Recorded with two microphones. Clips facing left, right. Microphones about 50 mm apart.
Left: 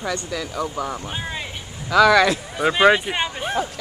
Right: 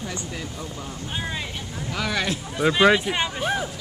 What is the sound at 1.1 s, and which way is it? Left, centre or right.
Vehicle, centre.